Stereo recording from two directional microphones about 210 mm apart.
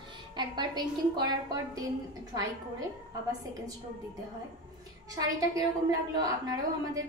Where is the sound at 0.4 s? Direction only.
20° right (ahead or behind).